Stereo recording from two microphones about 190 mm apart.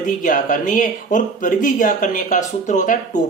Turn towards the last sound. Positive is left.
turn(degrees=40)  # may be behind; listen again after turning